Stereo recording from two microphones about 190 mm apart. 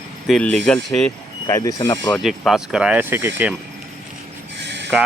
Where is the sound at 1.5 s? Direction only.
20° left (ahead or behind).